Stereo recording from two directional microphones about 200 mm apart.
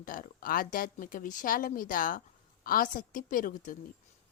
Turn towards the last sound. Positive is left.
turn(degrees=40)  # may be behind; listen again after turning